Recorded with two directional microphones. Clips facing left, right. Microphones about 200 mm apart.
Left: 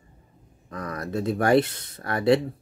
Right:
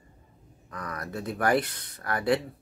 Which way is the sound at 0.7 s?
25° left (ahead or behind).